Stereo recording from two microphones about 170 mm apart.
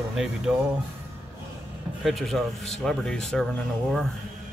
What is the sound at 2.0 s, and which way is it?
Speech, centre (ahead or behind).